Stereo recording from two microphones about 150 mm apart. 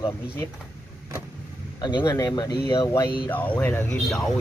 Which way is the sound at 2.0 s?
20° left (ahead or behind).